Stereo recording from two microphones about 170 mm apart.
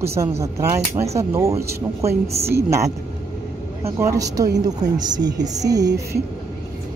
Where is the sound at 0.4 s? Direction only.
15° right (ahead or behind).